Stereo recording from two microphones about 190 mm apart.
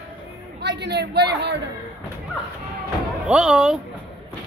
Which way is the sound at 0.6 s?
65° right (ahead or behind).